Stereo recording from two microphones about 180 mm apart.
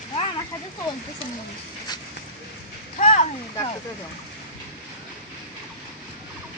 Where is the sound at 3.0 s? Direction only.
45° left (ahead or behind).